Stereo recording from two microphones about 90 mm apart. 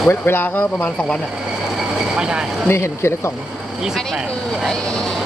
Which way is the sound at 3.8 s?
Centre (ahead or behind).